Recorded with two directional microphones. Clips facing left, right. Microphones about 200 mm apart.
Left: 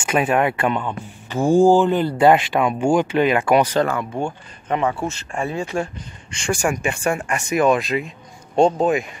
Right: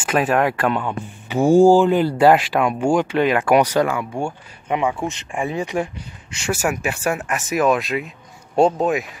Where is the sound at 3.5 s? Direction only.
10° right (ahead or behind).